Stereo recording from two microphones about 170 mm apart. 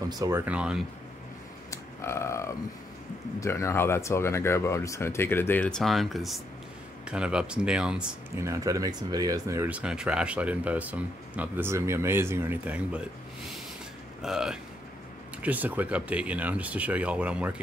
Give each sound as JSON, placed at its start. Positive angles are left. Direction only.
{"t": 0.2, "sound": "speech", "side_deg": -10}
{"t": 1.7, "sound": "a sound", "side_deg": 15}
{"t": 3.3, "sound": "speech", "side_deg": 15}
{"t": 8.4, "sound": "speech", "side_deg": -20}
{"t": 14.2, "sound": "speech", "side_deg": -5}